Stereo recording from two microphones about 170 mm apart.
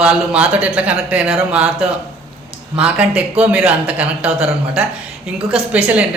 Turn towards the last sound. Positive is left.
turn(degrees=-10)  # may be behind; listen again after turning